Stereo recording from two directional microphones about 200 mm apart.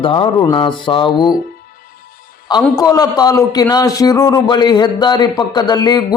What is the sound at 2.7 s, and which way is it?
A man's voice, 20° left (ahead or behind).